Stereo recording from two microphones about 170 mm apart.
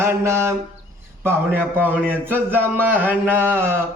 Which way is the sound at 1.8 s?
10° right (ahead or behind).